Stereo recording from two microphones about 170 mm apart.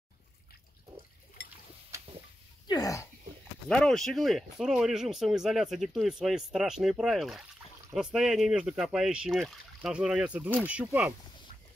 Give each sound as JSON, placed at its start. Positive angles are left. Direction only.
{"t": 2.7, "sound": "speech", "side_deg": 20}
{"t": 3.6, "sound": "speech", "side_deg": 5}